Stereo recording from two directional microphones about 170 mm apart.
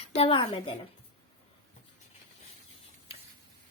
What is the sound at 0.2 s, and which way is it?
Speech, 30° left (ahead or behind).